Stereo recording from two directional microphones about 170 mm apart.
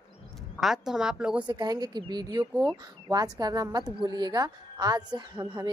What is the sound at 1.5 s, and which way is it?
A woman's voice, 25° right (ahead or behind).